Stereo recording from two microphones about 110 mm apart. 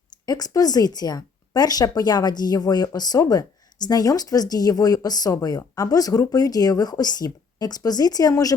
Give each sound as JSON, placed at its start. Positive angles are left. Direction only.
{"t": 0.3, "sound": "speech", "side_deg": 35}